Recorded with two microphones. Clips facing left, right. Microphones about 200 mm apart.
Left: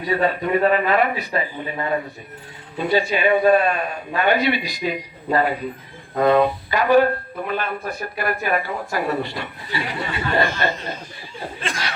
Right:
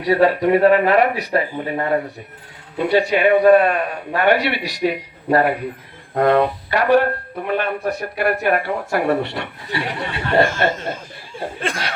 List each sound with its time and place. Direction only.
0.0 s speech: 75° right (ahead or behind)
10.4 s speech: 50° right (ahead or behind)
11.6 s chuckle: 55° right (ahead or behind)